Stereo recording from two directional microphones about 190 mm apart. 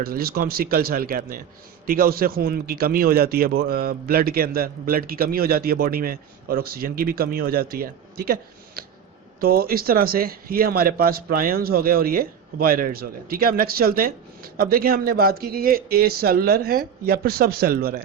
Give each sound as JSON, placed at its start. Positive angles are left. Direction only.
{"t": 0.0, "sound": "speech", "side_deg": -50}